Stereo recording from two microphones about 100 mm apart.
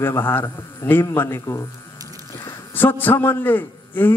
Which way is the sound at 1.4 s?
35° left (ahead or behind).